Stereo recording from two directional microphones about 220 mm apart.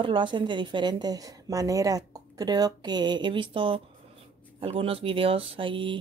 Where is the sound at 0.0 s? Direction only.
20° right (ahead or behind).